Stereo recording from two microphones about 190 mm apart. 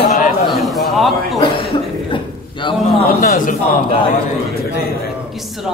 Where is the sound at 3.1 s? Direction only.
45° left (ahead or behind).